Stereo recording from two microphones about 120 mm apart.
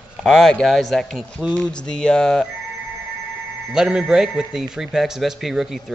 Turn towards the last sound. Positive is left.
turn(degrees=0)  # may be behind; listen again after turning